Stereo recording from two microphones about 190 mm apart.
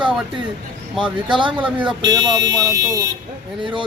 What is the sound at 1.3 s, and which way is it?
Speech, 25° right (ahead or behind).